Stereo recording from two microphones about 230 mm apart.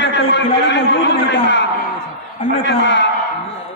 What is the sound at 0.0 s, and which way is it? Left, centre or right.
A man's voice, left.